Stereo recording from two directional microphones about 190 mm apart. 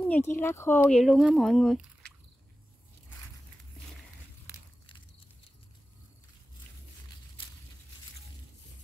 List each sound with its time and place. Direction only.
0.0 s speech: 10° left (ahead or behind)
4.5 s biting: 25° left (ahead or behind)